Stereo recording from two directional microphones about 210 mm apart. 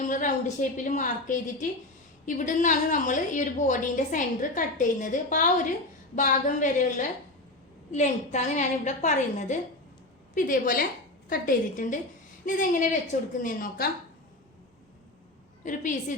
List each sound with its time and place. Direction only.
0.0 s a woman's voice: 35° left (ahead or behind)
7.9 s a woman's voice: 35° left (ahead or behind)
15.6 s a woman's voice: 35° left (ahead or behind)